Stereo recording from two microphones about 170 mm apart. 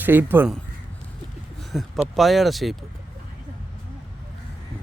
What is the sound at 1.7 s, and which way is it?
Speech, centre (ahead or behind).